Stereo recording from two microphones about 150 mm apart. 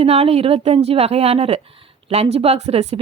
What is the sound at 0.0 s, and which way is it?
A woman's voice, 40° right (ahead or behind).